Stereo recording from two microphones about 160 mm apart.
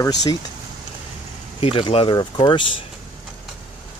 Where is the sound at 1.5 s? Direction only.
35° left (ahead or behind).